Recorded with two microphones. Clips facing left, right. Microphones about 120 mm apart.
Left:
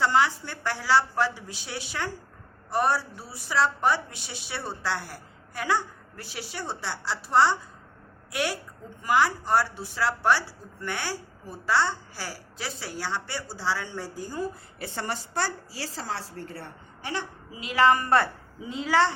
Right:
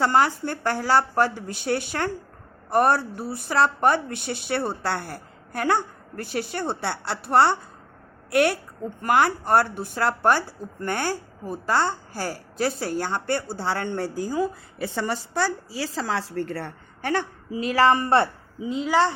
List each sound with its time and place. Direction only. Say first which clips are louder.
0.0 s a woman's voice: right 3 dB; 50° right (ahead or behind); by 14.4 s 90° right
16.0 s speech: right 8 dB; 90° right; by 19.1 s 20° right (ahead or behind)